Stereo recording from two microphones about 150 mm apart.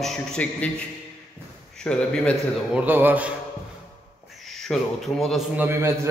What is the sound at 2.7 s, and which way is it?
Speech, 10° right (ahead or behind).